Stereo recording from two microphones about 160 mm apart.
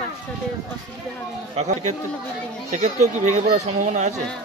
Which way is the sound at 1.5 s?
45° right (ahead or behind).